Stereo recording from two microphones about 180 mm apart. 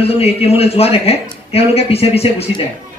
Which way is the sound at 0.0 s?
35° left (ahead or behind).